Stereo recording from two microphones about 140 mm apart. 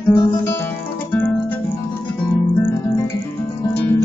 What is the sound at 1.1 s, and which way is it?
Music, 15° left (ahead or behind).